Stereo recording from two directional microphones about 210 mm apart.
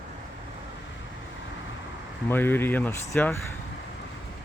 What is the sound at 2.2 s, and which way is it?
Speech, 10° left (ahead or behind).